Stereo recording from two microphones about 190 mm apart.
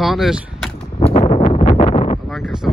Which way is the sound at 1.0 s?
30° left (ahead or behind).